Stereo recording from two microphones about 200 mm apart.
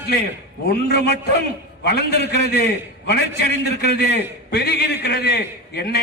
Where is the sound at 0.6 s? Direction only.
55° left (ahead or behind).